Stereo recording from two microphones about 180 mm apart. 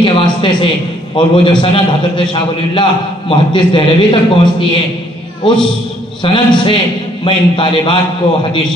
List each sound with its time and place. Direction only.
0.0 s a sound: 25° left (ahead or behind)
1.1 s a man's voice: 25° left (ahead or behind)
6.2 s a man's voice: 25° left (ahead or behind)